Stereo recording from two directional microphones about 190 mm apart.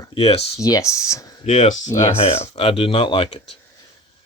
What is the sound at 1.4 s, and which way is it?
Speech, 40° left (ahead or behind).